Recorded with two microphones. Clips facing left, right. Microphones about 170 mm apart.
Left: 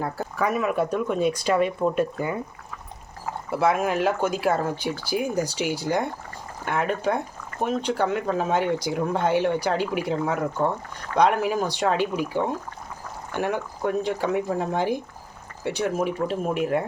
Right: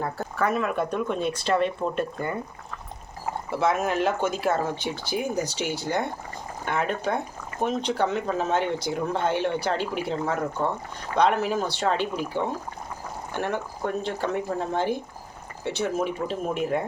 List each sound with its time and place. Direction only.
0.0 s speech: 10° left (ahead or behind)
3.5 s speech: 10° left (ahead or behind)